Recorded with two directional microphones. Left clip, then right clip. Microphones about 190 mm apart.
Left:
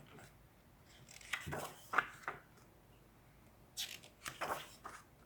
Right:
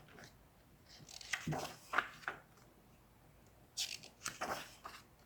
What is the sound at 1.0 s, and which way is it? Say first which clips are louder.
Chopping: right 1 dB; 15° left (ahead or behind).